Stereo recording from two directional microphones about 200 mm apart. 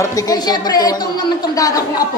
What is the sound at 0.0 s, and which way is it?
Speech, 20° left (ahead or behind).